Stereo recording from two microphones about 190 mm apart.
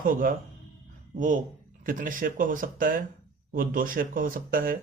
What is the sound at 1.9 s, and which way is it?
A man's voice, 45° right (ahead or behind).